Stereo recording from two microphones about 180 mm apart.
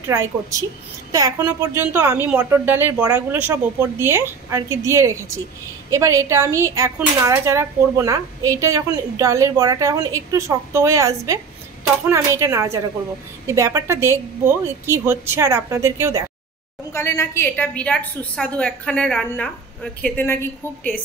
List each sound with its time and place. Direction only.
0.0 s speech: 15° right (ahead or behind)
16.9 s a woman's voice: 15° left (ahead or behind)